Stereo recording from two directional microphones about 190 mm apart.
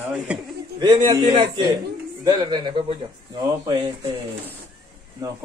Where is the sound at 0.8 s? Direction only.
20° right (ahead or behind).